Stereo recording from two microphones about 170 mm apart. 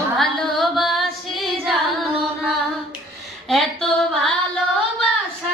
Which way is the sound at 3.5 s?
Centre (ahead or behind).